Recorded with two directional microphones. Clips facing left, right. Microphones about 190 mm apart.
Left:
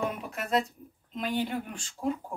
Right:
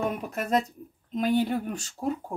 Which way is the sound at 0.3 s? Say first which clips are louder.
Right 3 dB; 40° right (ahead or behind).